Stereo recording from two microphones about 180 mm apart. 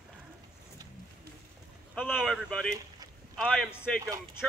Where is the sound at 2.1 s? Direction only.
Centre (ahead or behind).